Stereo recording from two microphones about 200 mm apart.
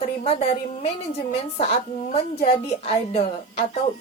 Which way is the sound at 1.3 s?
30° left (ahead or behind).